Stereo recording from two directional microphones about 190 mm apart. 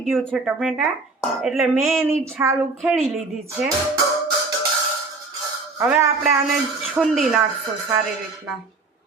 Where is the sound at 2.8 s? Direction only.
Centre (ahead or behind).